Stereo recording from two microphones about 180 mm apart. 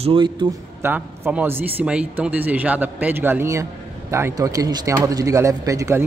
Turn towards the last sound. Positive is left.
turn(degrees=-15)  # may be behind; listen again after turning